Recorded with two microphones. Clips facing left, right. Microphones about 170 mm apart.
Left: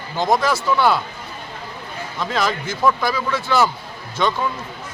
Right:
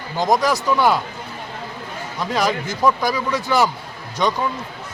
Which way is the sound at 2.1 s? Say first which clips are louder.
Right 1 dB; 10° right (ahead or behind).